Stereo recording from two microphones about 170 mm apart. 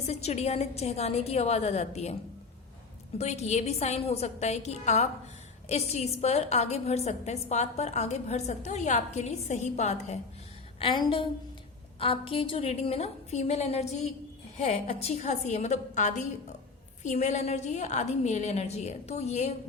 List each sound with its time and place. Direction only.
0.0 s a woman's voice: 40° left (ahead or behind)
3.2 s a woman's voice: 40° left (ahead or behind)
10.8 s a woman's voice: 30° left (ahead or behind)